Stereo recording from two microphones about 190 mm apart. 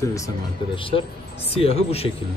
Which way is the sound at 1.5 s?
30° left (ahead or behind).